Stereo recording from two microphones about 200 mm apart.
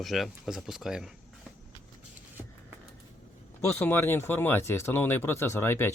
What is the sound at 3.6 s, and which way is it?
Speech, 10° left (ahead or behind).